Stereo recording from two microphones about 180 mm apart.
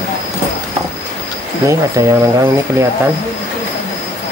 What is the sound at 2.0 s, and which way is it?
Speech, 20° right (ahead or behind).